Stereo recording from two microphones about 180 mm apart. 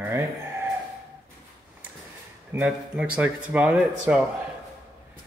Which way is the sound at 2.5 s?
5° right (ahead or behind).